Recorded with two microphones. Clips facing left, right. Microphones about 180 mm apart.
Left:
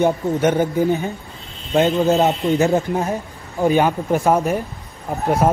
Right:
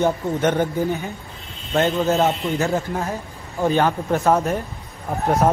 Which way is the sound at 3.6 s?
10° left (ahead or behind).